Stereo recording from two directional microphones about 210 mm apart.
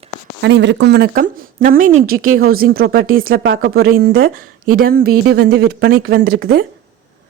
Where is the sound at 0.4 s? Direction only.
55° right (ahead or behind).